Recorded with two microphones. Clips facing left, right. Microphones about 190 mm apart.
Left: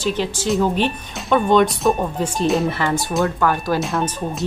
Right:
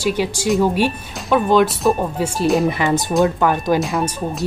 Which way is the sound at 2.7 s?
15° right (ahead or behind).